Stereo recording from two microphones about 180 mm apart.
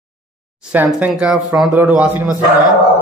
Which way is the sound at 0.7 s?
5° right (ahead or behind).